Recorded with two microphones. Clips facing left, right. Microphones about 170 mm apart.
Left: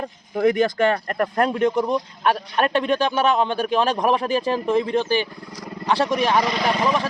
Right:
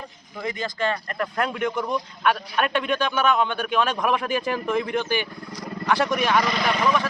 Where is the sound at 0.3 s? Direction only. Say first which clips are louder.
Left 11 dB; 60° left (ahead or behind).